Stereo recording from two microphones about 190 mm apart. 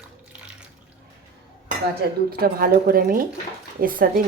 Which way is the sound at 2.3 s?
50° right (ahead or behind).